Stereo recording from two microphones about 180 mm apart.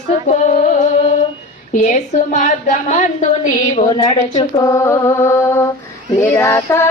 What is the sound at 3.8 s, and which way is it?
Speech, 25° left (ahead or behind).